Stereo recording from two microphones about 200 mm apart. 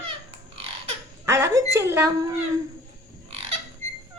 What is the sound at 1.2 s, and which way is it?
Speech, 15° right (ahead or behind).